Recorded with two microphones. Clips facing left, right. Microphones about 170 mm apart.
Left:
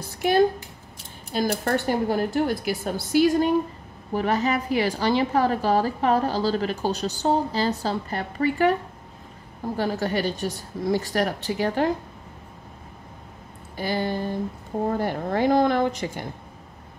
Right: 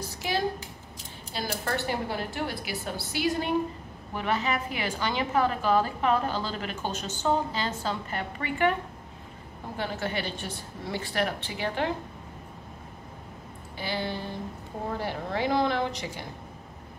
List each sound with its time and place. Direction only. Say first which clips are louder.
0.0 s a woman's voice: left 9 dB; 55° left (ahead or behind); by 8.7 s 40° left (ahead or behind)
9.8 s a woman's voice: left 6 dB; 40° left (ahead or behind)
13.7 s speech: left 6 dB; 45° left (ahead or behind)